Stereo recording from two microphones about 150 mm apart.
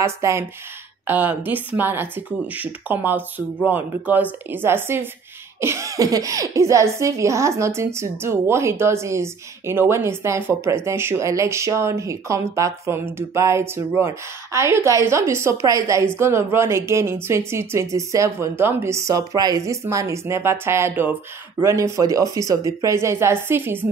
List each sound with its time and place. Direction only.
0.0 s speech: 20° right (ahead or behind)